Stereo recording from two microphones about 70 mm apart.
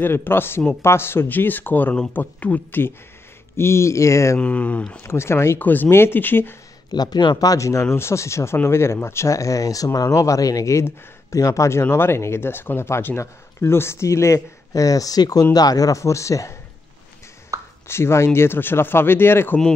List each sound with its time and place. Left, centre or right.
0.0 s speech: left
3.5 s speech: left
4.4 s speech: left
5.0 s speech: left
5.6 s speech: left
6.9 s speech: left
11.9 s speech: left
17.5 s a sound: right
17.8 s speech: left